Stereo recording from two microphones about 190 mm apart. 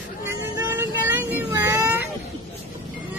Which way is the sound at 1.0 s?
10° right (ahead or behind).